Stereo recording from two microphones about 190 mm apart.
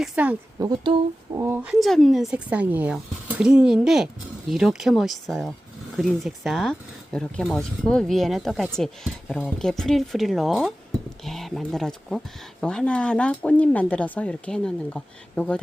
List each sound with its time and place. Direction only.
0.0 s a woman's voice: 5° right (ahead or behind)
0.6 s speech: 20° right (ahead or behind)
1.4 s speech: 10° right (ahead or behind); by 15.6 s 5° left (ahead or behind)